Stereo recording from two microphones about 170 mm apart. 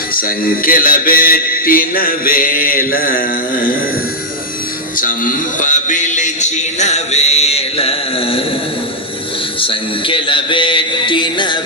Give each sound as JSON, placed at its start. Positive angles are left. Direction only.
{"t": 0.1, "sound": "a sound", "side_deg": 60}
{"t": 4.9, "sound": "music", "side_deg": 55}
{"t": 9.6, "sound": "music", "side_deg": 30}